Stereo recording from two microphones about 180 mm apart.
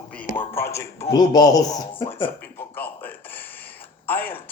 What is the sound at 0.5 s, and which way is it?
A man's voice, 15° left (ahead or behind).